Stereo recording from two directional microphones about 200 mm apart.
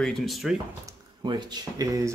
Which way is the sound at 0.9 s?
20° right (ahead or behind).